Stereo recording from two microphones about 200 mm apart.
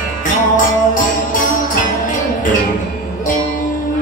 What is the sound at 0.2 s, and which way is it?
Music, 40° left (ahead or behind).